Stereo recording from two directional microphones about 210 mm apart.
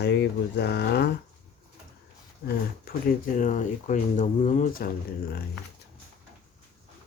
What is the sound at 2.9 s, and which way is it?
Speech, 45° left (ahead or behind).